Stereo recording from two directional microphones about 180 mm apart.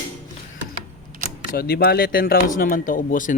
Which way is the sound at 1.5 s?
60° left (ahead or behind).